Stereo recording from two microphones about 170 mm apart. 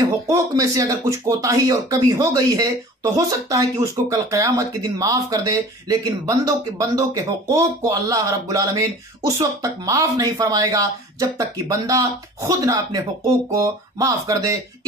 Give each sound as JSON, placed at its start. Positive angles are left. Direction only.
{"t": 0.0, "sound": "speech", "side_deg": -20}